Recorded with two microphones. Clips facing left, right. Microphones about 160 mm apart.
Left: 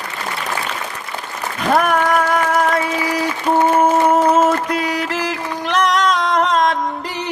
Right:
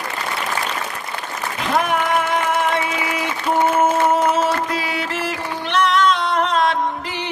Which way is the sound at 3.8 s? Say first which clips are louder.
Left 3 dB; 40° left (ahead or behind).